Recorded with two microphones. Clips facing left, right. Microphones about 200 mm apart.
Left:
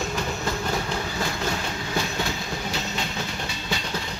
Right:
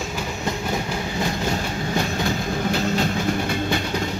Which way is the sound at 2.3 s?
55° right (ahead or behind).